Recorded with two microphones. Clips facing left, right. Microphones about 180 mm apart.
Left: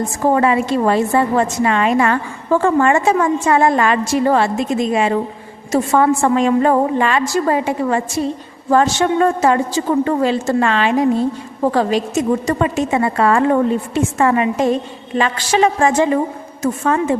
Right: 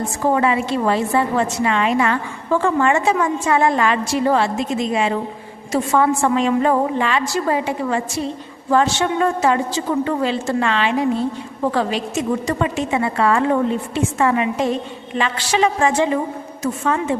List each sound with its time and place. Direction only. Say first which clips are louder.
0.3 s a woman's voice: left 4 dB; 45° left (ahead or behind)